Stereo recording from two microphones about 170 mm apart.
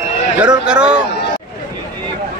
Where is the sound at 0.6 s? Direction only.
5° right (ahead or behind).